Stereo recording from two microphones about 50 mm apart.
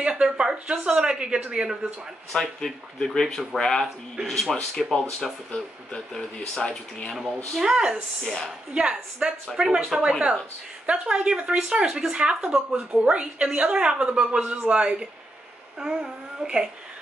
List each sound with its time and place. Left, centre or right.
0.1 s speech: centre
2.3 s speech: centre
5.5 s speech: left
6.1 s speech: centre
7.5 s speech: centre
8.2 s speech: centre
8.7 s speech: centre